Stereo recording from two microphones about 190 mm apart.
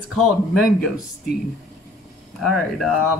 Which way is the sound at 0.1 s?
Centre (ahead or behind).